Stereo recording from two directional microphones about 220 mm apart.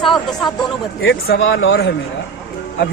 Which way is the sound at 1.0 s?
55° left (ahead or behind).